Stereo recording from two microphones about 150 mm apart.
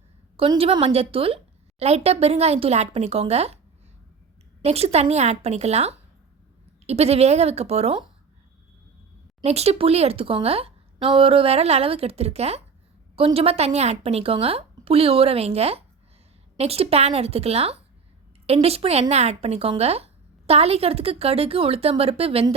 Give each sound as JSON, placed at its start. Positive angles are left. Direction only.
{"t": 0.3, "sound": "speech", "side_deg": -35}
{"t": 4.6, "sound": "speech", "side_deg": -45}
{"t": 9.4, "sound": "speech", "side_deg": -45}